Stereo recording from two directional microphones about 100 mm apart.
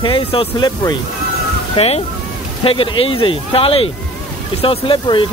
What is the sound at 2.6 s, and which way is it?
Speech, 60° left (ahead or behind).